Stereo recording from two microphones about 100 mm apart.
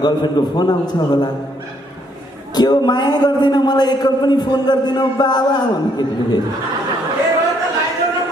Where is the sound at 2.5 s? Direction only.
45° left (ahead or behind).